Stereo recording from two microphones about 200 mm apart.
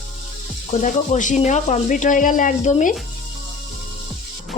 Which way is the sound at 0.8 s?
40° left (ahead or behind).